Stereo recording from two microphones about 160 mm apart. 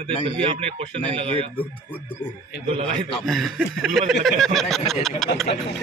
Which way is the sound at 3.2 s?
Centre (ahead or behind).